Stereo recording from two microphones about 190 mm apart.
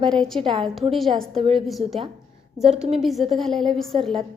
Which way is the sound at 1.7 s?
Centre (ahead or behind).